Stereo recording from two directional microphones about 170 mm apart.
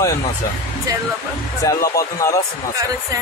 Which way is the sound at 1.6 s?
20° left (ahead or behind).